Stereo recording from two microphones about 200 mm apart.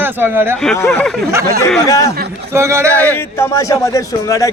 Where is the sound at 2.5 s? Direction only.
15° right (ahead or behind).